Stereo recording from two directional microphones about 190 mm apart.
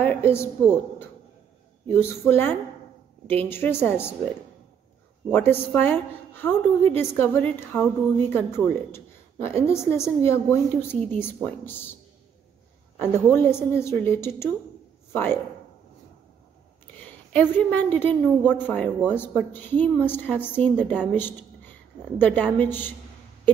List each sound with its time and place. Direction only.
0.0 s a woman's voice: 10° left (ahead or behind)
5.3 s a woman's voice: 10° left (ahead or behind)
13.0 s a woman's voice: 10° left (ahead or behind)
17.3 s a woman's voice: 10° left (ahead or behind)
21.1 s a sound: 10° left (ahead or behind)
22.2 s a woman's voice: 10° left (ahead or behind)